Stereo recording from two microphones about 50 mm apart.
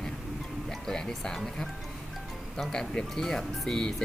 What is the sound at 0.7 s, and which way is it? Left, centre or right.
Speech, centre.